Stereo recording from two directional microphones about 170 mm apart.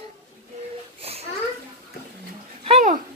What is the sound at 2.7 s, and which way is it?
Bathtub, 45° right (ahead or behind).